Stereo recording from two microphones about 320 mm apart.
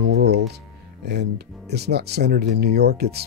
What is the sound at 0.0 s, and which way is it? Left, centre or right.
Music, right.